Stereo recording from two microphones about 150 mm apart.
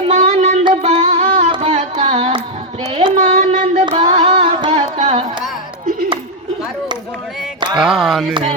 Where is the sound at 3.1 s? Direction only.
55° right (ahead or behind).